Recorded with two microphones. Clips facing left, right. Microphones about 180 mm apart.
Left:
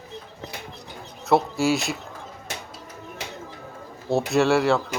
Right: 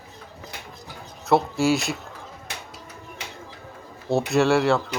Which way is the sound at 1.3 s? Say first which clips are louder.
Even; centre (ahead or behind).